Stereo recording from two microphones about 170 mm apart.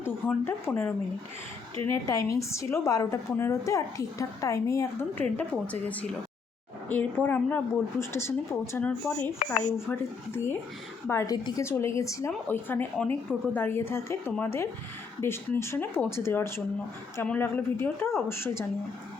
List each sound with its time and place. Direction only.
0.0 s a woman's voice: 15° left (ahead or behind)
6.8 s a woman's voice: 10° left (ahead or behind)
9.4 s a woman's voice: 50° left (ahead or behind)
9.7 s a woman's voice: 15° left (ahead or behind)